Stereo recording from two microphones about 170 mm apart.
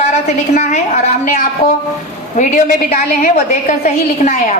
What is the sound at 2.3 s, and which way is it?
Speech, 45° left (ahead or behind).